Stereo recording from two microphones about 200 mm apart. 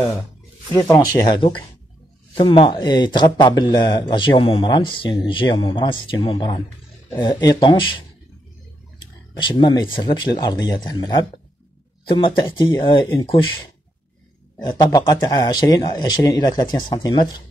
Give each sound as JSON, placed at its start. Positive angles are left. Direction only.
{"t": 0.7, "sound": "speech", "side_deg": 15}
{"t": 9.4, "sound": "speech", "side_deg": 25}
{"t": 14.6, "sound": "speech", "side_deg": 20}